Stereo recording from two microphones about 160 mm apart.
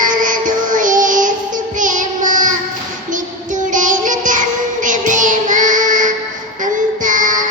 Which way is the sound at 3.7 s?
55° right (ahead or behind).